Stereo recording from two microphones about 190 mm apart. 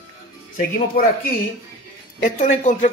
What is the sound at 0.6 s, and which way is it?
Speech, 50° left (ahead or behind).